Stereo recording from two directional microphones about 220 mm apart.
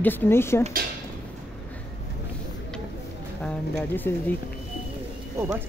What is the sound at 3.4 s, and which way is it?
Speech, 10° left (ahead or behind).